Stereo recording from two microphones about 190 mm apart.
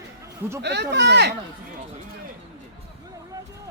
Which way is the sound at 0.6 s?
65° right (ahead or behind).